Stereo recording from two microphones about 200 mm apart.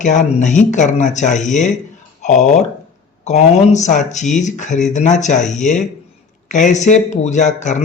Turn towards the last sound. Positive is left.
turn(degrees=35)  # may be behind; listen again after turning